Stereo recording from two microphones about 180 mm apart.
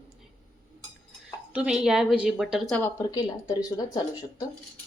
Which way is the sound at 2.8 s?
15° left (ahead or behind).